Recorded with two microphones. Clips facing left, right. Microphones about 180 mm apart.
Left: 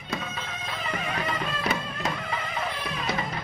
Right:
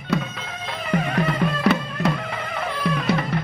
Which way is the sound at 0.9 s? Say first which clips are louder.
Right 10 dB; 60° right (ahead or behind).